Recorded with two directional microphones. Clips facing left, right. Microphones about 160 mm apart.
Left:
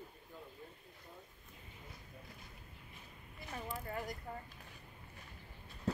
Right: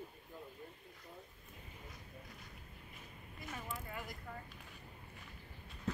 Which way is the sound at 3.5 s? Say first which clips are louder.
Left 4 dB; 40° left (ahead or behind).